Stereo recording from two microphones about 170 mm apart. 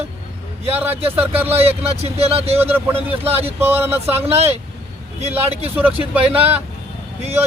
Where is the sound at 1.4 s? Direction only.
35° right (ahead or behind).